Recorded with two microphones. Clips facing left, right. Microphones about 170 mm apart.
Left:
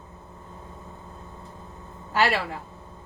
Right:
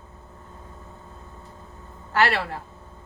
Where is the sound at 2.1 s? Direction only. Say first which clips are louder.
Right 1 dB; 15° left (ahead or behind).